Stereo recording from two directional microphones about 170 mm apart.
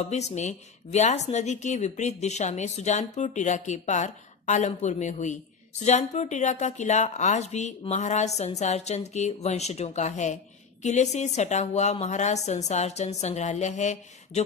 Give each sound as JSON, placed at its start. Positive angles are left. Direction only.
{"t": 0.0, "sound": "speech", "side_deg": 40}